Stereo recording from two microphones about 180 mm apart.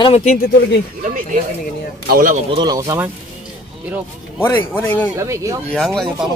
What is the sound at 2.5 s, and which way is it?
Speech, 20° right (ahead or behind).